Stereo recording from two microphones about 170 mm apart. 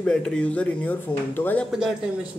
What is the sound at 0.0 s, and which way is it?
Speech, 5° left (ahead or behind).